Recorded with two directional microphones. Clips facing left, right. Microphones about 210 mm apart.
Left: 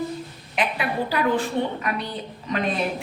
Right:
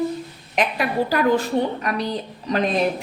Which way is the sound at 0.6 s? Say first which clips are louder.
Right 4 dB; 45° right (ahead or behind).